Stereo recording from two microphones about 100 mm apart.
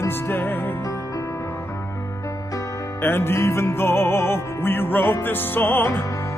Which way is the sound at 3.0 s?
25° left (ahead or behind).